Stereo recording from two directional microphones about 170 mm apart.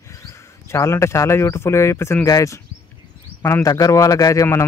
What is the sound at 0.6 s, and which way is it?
A man's voice, 15° left (ahead or behind).